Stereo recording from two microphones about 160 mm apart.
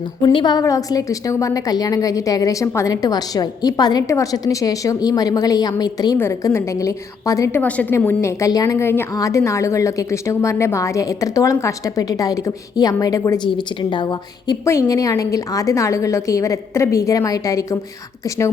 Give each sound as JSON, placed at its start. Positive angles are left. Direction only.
{"t": 0.2, "sound": "a woman's voice", "side_deg": 30}